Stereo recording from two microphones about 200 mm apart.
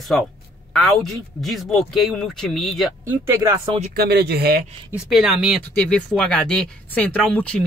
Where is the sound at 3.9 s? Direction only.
55° right (ahead or behind).